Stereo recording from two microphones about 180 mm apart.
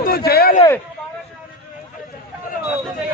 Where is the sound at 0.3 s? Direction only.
60° left (ahead or behind).